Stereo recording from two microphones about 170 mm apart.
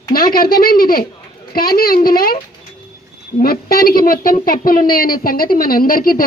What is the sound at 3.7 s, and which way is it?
Speech, 60° left (ahead or behind).